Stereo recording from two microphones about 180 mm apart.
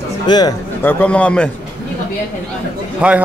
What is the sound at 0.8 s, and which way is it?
Speech, 5° left (ahead or behind).